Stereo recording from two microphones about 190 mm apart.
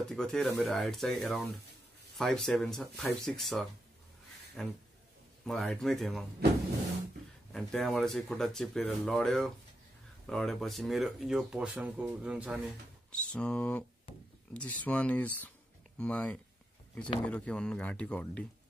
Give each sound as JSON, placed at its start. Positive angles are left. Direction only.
{"t": 0.0, "sound": "speech", "side_deg": 5}
{"t": 7.5, "sound": "speech", "side_deg": 0}
{"t": 13.1, "sound": "speech", "side_deg": 5}
{"t": 14.1, "sound": "wood", "side_deg": 30}
{"t": 14.5, "sound": "speech", "side_deg": 5}